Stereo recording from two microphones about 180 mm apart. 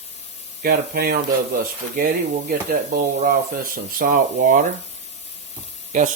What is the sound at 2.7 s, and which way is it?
Speech, 55° right (ahead or behind).